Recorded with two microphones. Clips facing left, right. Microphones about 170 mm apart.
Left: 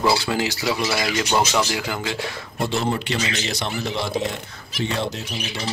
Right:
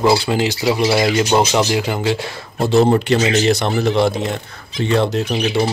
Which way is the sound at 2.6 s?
45° right (ahead or behind).